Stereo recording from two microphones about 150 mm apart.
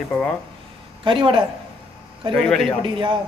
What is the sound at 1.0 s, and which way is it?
Speech, 35° right (ahead or behind).